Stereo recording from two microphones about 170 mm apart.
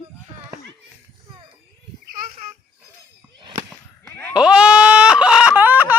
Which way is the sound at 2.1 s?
50° right (ahead or behind).